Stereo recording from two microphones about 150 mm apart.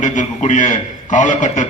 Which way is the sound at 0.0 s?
55° left (ahead or behind).